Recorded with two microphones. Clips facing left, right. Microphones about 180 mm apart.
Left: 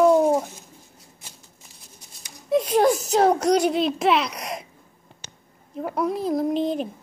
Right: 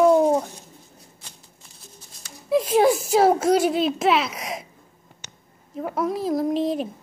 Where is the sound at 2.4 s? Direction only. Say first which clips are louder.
Right 1 dB; 5° right (ahead or behind).